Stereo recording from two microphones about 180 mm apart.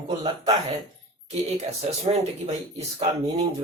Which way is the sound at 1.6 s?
35° right (ahead or behind).